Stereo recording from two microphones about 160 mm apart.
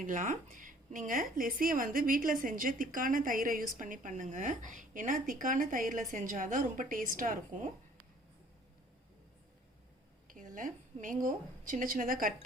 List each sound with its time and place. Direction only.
0.0 s a woman's voice: 55° right (ahead or behind)
10.2 s a woman's voice: 55° right (ahead or behind)